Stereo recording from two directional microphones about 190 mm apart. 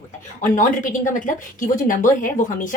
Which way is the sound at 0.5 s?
45° left (ahead or behind).